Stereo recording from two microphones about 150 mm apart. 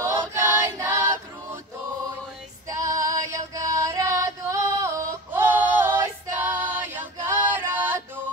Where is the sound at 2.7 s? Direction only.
20° right (ahead or behind).